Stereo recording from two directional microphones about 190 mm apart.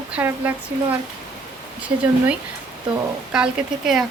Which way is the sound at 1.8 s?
5° right (ahead or behind).